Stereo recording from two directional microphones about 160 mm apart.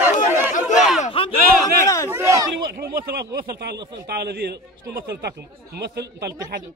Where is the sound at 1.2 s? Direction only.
35° left (ahead or behind).